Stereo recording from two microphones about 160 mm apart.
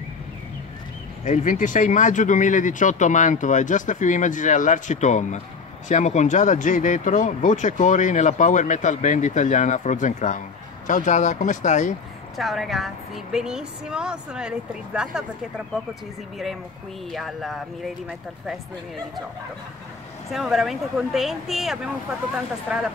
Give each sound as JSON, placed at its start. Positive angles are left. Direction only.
{"t": 1.2, "sound": "speech", "side_deg": 50}
{"t": 12.4, "sound": "a woman's voice", "side_deg": 0}
{"t": 20.2, "sound": "a woman's voice", "side_deg": 0}